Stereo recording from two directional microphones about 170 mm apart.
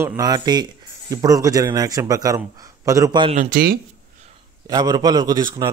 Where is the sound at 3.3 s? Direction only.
50° right (ahead or behind).